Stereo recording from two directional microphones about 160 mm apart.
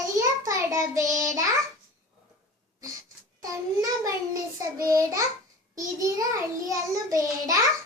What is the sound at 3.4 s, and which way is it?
A child's voice, 20° right (ahead or behind).